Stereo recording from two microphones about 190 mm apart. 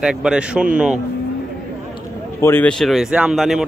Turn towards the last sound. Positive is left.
turn(degrees=0)  # may be behind; listen again after turning